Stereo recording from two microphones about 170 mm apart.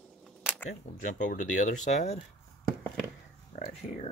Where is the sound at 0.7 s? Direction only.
45° left (ahead or behind).